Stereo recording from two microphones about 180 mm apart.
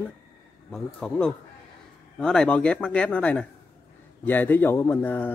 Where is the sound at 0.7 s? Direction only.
5° left (ahead or behind).